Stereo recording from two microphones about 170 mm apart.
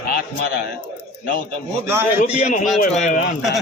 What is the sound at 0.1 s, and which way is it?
Speech, 65° left (ahead or behind).